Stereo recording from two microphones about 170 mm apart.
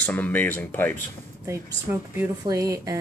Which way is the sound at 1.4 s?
15° right (ahead or behind).